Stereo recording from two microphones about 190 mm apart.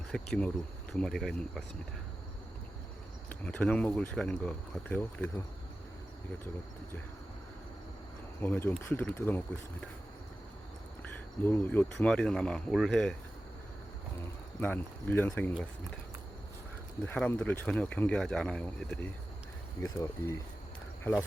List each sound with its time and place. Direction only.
0.1 s speech: 5° left (ahead or behind)
3.2 s speech: 10° left (ahead or behind)
8.4 s speech: 10° left (ahead or behind)
11.4 s speech: 10° left (ahead or behind)
14.6 s speech: 10° left (ahead or behind)
17.2 s speech: 5° left (ahead or behind)
19.8 s speech: 15° left (ahead or behind)